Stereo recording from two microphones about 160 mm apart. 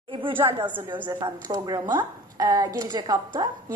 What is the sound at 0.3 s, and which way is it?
Speech, 15° right (ahead or behind).